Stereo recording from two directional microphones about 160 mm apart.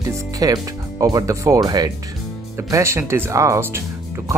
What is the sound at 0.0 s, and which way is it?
Speech, 20° right (ahead or behind).